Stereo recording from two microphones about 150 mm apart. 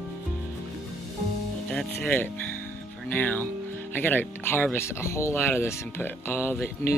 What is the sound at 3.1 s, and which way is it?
Speech, 10° left (ahead or behind).